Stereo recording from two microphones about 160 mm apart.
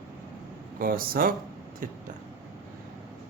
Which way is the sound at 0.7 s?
65° right (ahead or behind).